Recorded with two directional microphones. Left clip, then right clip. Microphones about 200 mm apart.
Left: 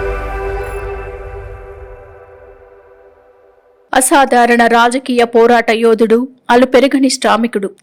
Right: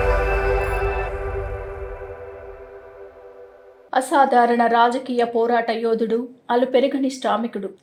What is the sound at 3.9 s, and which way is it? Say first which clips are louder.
Speech: left 7 dB; 40° left (ahead or behind).